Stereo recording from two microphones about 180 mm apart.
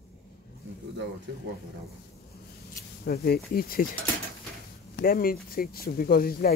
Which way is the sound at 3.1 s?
60° left (ahead or behind).